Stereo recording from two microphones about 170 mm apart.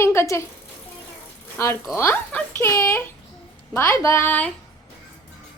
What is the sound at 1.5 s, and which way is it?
Speech, 15° left (ahead or behind).